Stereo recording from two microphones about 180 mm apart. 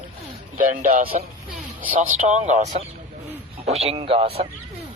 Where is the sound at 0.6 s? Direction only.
50° right (ahead or behind).